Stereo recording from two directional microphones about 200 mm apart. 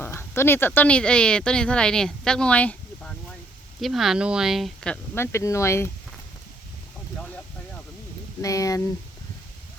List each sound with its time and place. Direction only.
0.0 s speech: 10° left (ahead or behind)
8.4 s speech: 15° left (ahead or behind)